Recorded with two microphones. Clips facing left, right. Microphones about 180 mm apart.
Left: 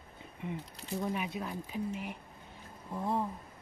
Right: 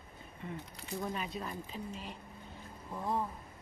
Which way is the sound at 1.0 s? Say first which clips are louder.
Left 3 dB; 10° left (ahead or behind).